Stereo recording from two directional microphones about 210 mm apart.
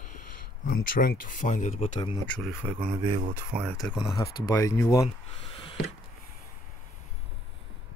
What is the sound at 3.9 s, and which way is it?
Speech, 20° left (ahead or behind).